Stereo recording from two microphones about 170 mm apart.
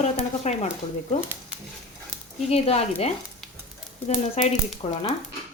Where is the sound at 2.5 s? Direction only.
40° left (ahead or behind).